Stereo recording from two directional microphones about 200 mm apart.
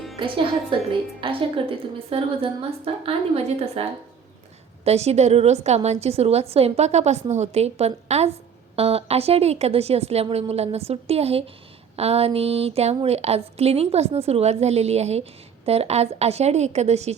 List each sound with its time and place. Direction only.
0.2 s a woman's voice: 25° right (ahead or behind)
4.9 s a woman's voice: 30° right (ahead or behind)